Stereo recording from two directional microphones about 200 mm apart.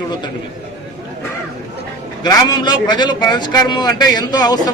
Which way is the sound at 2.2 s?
20° left (ahead or behind).